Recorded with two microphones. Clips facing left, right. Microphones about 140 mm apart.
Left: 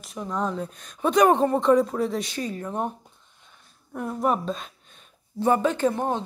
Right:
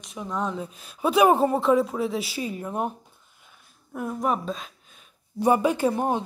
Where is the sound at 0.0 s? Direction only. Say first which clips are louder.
Left 1 dB; centre (ahead or behind).